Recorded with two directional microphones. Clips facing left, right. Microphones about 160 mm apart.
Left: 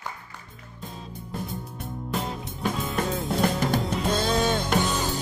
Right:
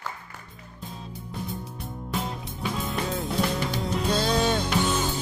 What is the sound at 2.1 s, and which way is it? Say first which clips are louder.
Music: left 1 dB; centre (ahead or behind).